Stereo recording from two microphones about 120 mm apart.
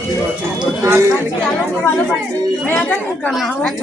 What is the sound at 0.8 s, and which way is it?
Speech, 20° right (ahead or behind).